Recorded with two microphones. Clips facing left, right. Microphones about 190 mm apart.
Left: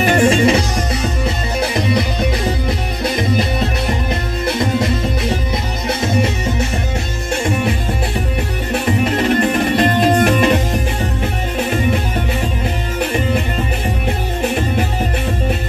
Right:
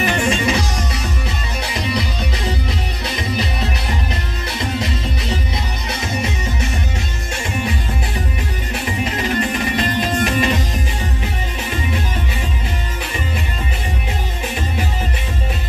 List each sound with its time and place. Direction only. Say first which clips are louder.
0.2 s music: left 7 dB; 45° left (ahead or behind)
1.6 s music: left 6 dB; 55° left (ahead or behind)
9.0 s music: left 4 dB; 55° left (ahead or behind)
13.0 s music: left 11 dB; 55° left (ahead or behind)